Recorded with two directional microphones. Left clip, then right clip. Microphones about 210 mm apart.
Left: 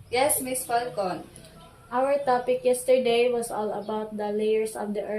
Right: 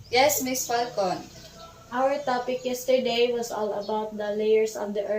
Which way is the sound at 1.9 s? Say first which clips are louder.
Left 2 dB; 55° left (ahead or behind).